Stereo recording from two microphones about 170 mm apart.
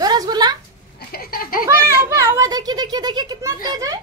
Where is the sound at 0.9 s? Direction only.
65° left (ahead or behind).